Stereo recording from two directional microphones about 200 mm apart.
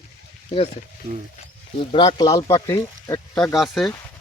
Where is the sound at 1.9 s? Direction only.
20° left (ahead or behind).